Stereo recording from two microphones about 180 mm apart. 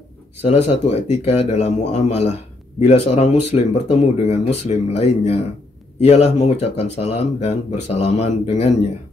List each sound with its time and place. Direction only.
0.4 s speech: 35° left (ahead or behind)